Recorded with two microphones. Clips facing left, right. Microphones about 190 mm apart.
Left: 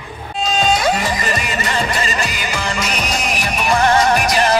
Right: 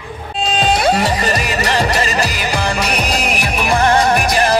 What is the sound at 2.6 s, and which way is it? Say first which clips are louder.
Music: right 3 dB; 60° right (ahead or behind).